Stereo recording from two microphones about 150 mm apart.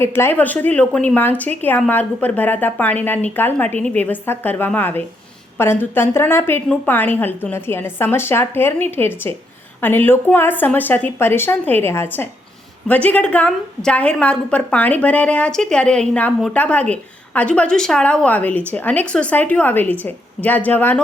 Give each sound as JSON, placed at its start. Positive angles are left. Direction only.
{"t": 0.0, "sound": "a woman's voice", "side_deg": 15}